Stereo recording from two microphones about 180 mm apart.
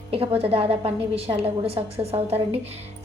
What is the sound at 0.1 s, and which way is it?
A woman's voice, 30° right (ahead or behind).